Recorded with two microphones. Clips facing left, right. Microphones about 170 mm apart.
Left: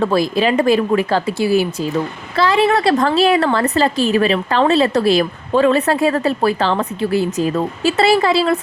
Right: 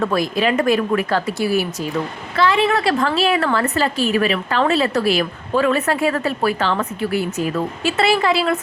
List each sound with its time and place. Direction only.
0.0 s a woman's voice: 30° left (ahead or behind)